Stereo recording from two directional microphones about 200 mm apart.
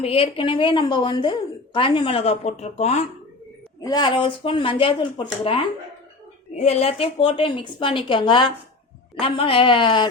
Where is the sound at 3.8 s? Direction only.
20° left (ahead or behind).